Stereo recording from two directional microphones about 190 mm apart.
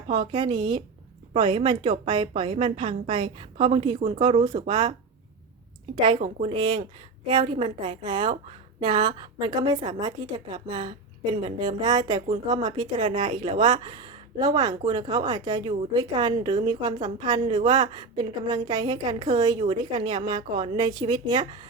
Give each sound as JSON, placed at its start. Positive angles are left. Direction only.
{"t": 0.1, "sound": "a woman's voice", "side_deg": -25}
{"t": 6.1, "sound": "a woman's voice", "side_deg": -35}